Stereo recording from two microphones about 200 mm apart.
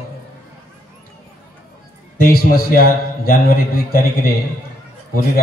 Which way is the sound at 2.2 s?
50° left (ahead or behind).